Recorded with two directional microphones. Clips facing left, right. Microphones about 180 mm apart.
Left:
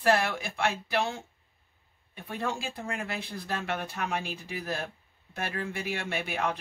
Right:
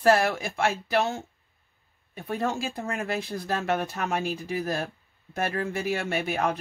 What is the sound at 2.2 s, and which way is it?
Speech, 45° right (ahead or behind).